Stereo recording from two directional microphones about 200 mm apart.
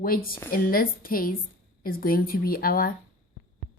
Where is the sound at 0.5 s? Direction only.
45° left (ahead or behind).